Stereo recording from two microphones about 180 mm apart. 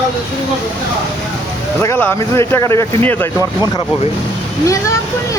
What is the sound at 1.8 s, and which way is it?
Speech, 15° left (ahead or behind).